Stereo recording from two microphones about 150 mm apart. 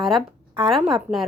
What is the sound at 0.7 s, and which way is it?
Speech, centre (ahead or behind).